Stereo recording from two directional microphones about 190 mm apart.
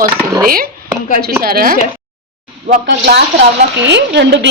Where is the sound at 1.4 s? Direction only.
50° right (ahead or behind).